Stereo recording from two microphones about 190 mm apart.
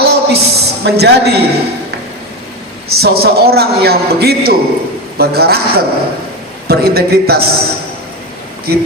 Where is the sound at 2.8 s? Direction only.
55° right (ahead or behind).